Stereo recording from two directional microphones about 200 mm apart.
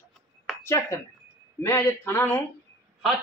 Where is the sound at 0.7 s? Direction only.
15° left (ahead or behind).